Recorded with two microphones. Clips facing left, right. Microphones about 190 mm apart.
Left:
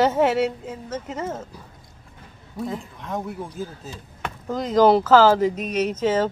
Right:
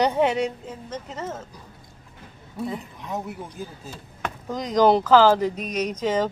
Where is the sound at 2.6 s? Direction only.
Centre (ahead or behind).